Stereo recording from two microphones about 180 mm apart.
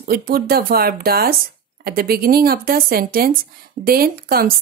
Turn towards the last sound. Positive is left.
turn(degrees=-55)  # may be behind; listen again after turning